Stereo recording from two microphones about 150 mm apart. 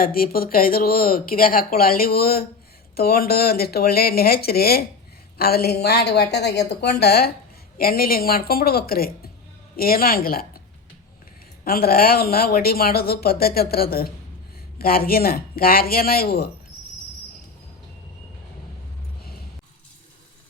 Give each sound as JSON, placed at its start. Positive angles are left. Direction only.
{"t": 0.0, "sound": "speech", "side_deg": 75}
{"t": 11.6, "sound": "speech", "side_deg": 80}